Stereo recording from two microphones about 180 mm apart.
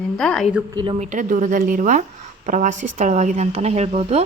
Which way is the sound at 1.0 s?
45° right (ahead or behind).